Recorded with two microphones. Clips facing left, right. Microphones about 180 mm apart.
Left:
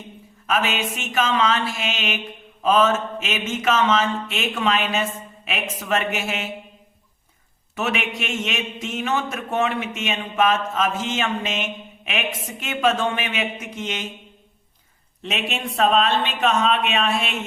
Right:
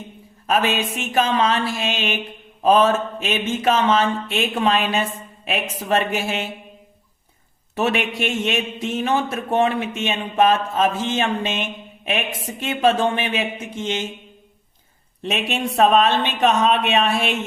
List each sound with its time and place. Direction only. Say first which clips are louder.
0.4 s a man's voice: right 3 dB; 35° right (ahead or behind)
7.8 s a man's voice: right 4 dB; 35° right (ahead or behind)
15.3 s a woman's voice: right 4 dB; 45° right (ahead or behind)